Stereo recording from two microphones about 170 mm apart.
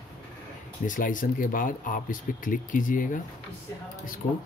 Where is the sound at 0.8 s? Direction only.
50° left (ahead or behind).